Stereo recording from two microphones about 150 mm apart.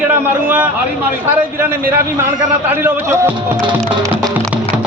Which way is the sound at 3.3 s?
30° right (ahead or behind).